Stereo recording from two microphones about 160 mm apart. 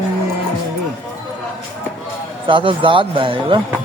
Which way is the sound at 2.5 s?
30° right (ahead or behind).